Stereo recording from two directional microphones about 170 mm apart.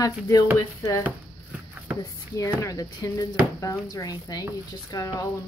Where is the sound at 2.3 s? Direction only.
20° left (ahead or behind).